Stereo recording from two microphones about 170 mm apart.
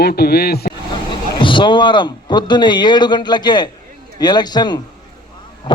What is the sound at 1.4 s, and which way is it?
A man's voice, 30° left (ahead or behind).